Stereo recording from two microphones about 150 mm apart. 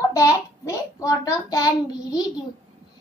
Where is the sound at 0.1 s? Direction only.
20° left (ahead or behind).